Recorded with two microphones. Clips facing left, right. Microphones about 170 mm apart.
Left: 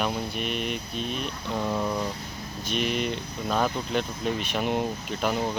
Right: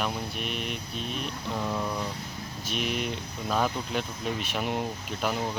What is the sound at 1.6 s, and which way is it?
Speech, 15° left (ahead or behind).